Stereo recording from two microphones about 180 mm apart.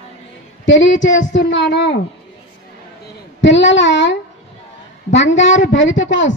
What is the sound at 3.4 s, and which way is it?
Speech, 90° left.